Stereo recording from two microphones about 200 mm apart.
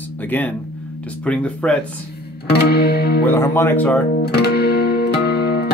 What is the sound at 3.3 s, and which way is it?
Speech, 10° left (ahead or behind).